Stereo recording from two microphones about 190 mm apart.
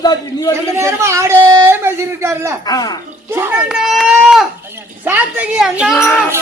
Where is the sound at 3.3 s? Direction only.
10° right (ahead or behind).